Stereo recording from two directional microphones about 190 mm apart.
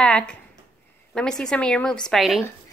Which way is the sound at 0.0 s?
5° left (ahead or behind).